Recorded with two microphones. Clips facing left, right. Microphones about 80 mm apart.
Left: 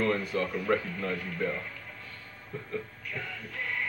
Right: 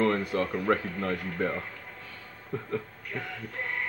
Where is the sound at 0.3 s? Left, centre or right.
Right.